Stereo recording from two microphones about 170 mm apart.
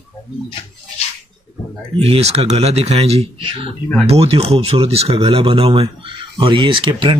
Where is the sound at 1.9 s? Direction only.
35° right (ahead or behind).